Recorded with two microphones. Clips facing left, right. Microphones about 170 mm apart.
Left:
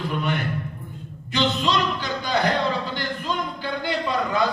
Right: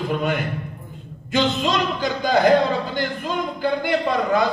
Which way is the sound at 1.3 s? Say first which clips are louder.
Right 2 dB; 45° right (ahead or behind).